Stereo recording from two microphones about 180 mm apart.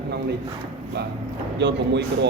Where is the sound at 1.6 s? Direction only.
75° right (ahead or behind).